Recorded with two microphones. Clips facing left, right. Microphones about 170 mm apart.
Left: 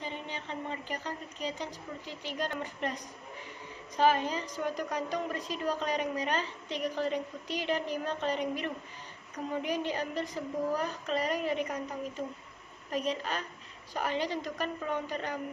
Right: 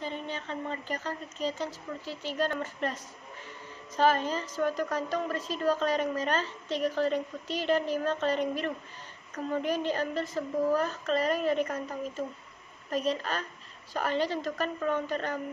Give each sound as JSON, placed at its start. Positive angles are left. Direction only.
{"t": 0.0, "sound": "a woman's voice", "side_deg": 15}